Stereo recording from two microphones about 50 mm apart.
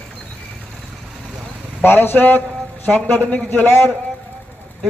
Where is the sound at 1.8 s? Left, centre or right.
Left.